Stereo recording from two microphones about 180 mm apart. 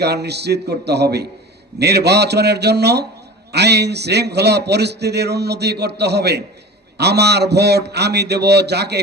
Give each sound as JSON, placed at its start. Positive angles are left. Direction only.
{"t": 0.0, "sound": "a man's voice", "side_deg": -65}